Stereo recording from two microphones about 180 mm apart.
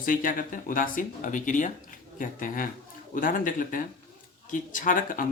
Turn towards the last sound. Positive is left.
turn(degrees=50)  # may be behind; listen again after turning